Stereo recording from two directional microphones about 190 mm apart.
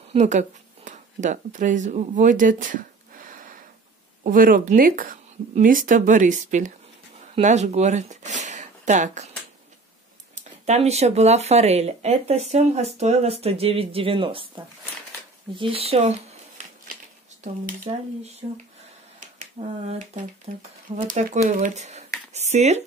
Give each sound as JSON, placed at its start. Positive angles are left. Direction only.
{"t": 0.1, "sound": "speech", "side_deg": -40}
{"t": 10.3, "sound": "speech", "side_deg": -35}